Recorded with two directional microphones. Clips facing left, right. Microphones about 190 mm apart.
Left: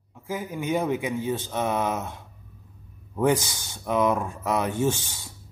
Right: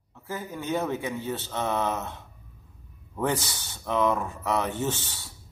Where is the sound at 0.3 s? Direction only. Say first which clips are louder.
Left 3 dB; 10° left (ahead or behind).